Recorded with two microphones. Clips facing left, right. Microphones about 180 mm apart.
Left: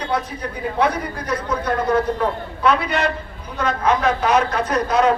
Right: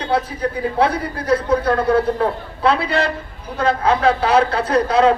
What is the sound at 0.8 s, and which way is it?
A man's voice, 30° right (ahead or behind).